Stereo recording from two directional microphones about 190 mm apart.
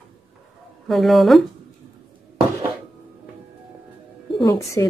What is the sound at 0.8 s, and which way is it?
Speech, centre (ahead or behind).